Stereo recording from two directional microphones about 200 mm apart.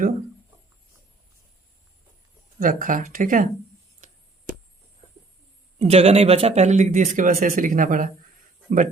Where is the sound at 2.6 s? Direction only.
45° right (ahead or behind).